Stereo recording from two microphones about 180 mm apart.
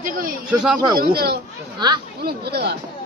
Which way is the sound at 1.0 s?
60° right (ahead or behind).